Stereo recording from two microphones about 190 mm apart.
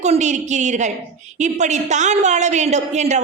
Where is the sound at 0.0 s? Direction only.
35° right (ahead or behind).